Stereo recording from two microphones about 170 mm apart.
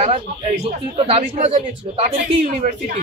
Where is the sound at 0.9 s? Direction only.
35° right (ahead or behind).